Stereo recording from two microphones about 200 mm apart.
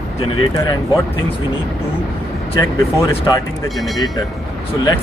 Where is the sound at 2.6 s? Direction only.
20° left (ahead or behind).